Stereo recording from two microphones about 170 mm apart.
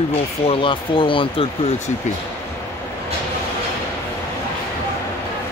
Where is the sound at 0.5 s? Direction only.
30° left (ahead or behind).